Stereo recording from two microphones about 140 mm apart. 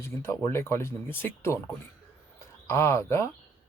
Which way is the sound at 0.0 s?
15° left (ahead or behind).